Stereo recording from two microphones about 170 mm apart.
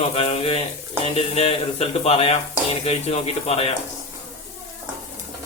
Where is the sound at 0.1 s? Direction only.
35° left (ahead or behind).